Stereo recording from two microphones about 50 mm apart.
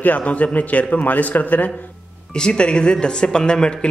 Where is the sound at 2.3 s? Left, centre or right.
Centre.